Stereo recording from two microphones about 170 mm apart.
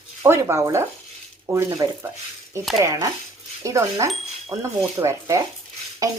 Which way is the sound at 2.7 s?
20° right (ahead or behind).